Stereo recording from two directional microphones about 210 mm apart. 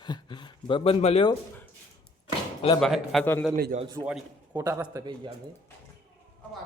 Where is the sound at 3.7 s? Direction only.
35° right (ahead or behind).